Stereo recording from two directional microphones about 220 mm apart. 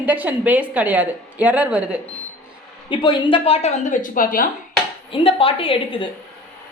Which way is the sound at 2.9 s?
20° left (ahead or behind).